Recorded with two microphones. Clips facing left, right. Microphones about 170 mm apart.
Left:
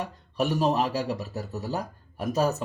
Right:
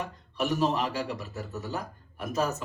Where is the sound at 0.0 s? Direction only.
35° left (ahead or behind).